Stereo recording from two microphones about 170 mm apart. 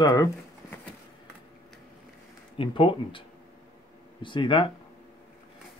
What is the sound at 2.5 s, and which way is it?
Speech, 30° left (ahead or behind).